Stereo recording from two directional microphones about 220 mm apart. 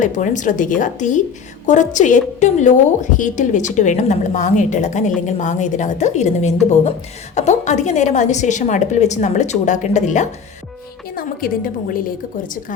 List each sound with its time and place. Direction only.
0.0 s a woman's voice: 35° left (ahead or behind)